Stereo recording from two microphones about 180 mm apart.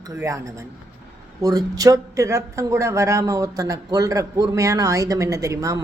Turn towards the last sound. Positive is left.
turn(degrees=-15)  # may be behind; listen again after turning